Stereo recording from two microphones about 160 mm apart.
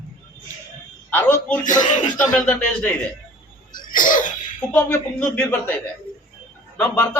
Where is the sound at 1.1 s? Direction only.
10° left (ahead or behind).